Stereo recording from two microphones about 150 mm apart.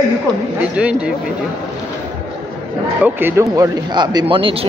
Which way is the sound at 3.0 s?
15° right (ahead or behind).